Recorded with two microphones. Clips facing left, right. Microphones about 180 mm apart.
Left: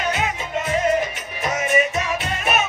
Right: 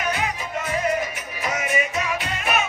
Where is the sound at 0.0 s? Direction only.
20° left (ahead or behind).